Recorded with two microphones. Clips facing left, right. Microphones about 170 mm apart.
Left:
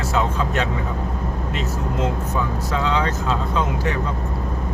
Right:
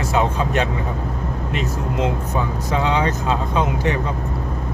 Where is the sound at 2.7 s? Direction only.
20° right (ahead or behind).